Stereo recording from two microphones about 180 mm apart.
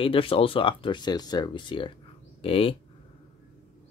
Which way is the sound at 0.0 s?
30° left (ahead or behind).